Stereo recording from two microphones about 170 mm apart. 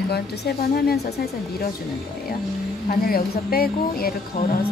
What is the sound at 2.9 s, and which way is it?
Speech, 60° left (ahead or behind).